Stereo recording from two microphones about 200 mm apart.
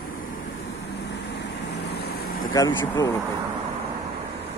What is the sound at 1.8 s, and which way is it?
Vehicle, 55° left (ahead or behind).